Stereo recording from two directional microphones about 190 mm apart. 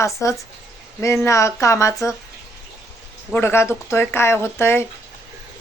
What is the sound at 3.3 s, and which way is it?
Speech, 10° left (ahead or behind).